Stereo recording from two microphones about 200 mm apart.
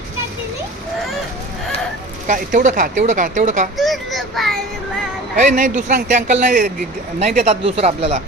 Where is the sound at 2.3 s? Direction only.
40° right (ahead or behind).